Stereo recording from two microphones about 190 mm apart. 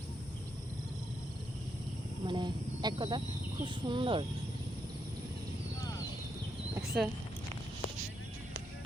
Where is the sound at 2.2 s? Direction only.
25° right (ahead or behind).